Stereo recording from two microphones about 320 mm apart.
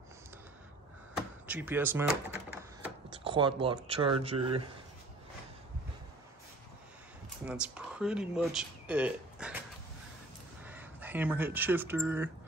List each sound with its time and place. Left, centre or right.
1.5 s speech: centre
7.4 s speech: centre
10.6 s speech: centre